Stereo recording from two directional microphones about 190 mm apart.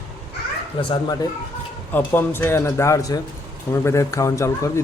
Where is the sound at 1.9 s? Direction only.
10° left (ahead or behind).